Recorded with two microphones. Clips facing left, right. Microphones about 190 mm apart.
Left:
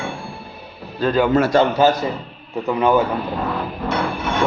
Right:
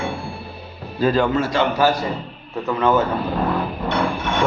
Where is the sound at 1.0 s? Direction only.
Centre (ahead or behind).